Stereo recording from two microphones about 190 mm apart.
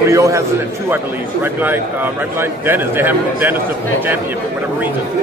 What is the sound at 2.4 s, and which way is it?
A man's voice, 10° right (ahead or behind).